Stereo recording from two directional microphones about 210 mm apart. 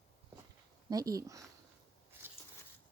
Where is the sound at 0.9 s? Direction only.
15° right (ahead or behind).